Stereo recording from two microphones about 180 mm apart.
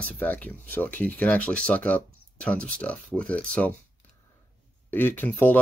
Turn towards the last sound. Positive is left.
turn(degrees=10)  # may be behind; listen again after turning